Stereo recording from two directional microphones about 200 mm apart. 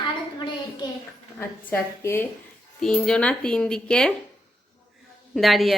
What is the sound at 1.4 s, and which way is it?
A woman's voice, 10° left (ahead or behind).